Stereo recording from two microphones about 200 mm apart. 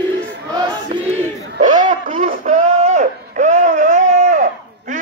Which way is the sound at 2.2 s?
35° right (ahead or behind).